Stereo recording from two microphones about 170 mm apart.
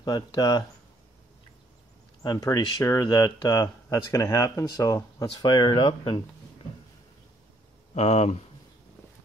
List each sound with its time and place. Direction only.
0.0 s speech: 20° left (ahead or behind)
2.2 s speech: 20° left (ahead or behind)
7.9 s speech: 40° left (ahead or behind)